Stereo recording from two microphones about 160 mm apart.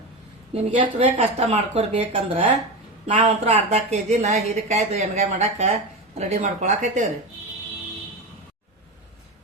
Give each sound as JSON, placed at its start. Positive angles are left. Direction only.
{"t": 0.5, "sound": "a woman's voice", "side_deg": -40}